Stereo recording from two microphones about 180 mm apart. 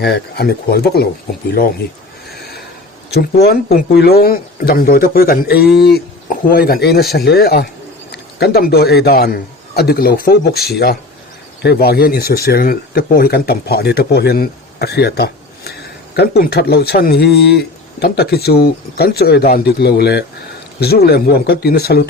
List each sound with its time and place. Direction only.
0.0 s speech: 65° left (ahead or behind)
3.1 s a man's voice: 60° left (ahead or behind)